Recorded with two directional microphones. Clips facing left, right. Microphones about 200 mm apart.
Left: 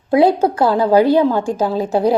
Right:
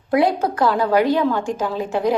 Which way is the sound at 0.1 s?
30° left (ahead or behind).